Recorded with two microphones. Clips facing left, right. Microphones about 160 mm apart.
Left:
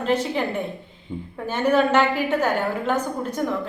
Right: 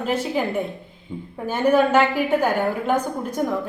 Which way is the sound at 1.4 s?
10° right (ahead or behind).